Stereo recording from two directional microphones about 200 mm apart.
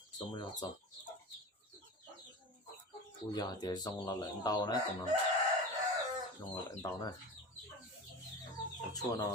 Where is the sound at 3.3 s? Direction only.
20° left (ahead or behind).